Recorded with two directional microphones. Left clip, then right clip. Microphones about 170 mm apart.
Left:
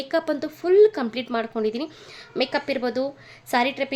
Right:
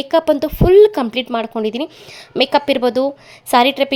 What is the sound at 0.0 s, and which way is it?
A woman's voice, 45° right (ahead or behind).